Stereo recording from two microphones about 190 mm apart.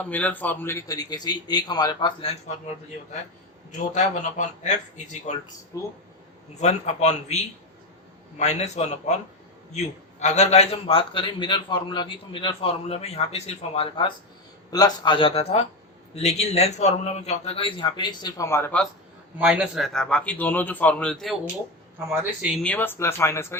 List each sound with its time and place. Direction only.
0.0 s a man's voice: 5° left (ahead or behind); by 2.4 s 25° left (ahead or behind)
3.8 s speech: 40° left (ahead or behind)
5.7 s speech: 15° left (ahead or behind)
6.6 s a man's voice: 35° left (ahead or behind); by 18.9 s 10° left (ahead or behind)
19.4 s a man's voice: 5° right (ahead or behind)
22.1 s speech: 10° right (ahead or behind)
22.6 s speech: 10° left (ahead or behind)